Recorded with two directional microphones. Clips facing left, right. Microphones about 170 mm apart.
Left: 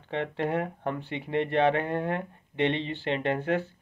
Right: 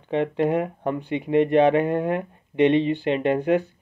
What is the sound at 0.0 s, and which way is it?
Speech, 15° right (ahead or behind).